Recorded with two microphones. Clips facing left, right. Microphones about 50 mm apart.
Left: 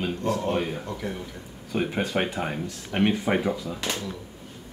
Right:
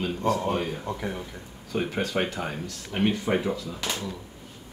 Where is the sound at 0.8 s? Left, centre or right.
Centre.